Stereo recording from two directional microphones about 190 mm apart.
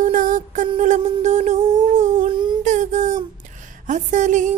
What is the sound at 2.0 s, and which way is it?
Humming, 40° right (ahead or behind).